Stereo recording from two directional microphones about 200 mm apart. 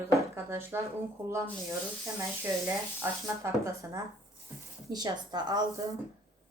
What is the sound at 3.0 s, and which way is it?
A woman's voice, 15° right (ahead or behind).